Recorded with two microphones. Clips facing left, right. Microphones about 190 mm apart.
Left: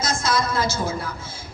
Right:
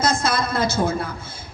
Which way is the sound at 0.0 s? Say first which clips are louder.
Right 2 dB; 60° right (ahead or behind).